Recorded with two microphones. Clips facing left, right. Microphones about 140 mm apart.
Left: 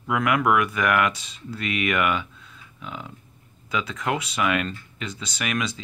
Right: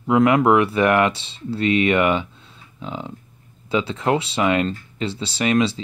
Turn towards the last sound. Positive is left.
turn(degrees=-30)  # may be behind; listen again after turning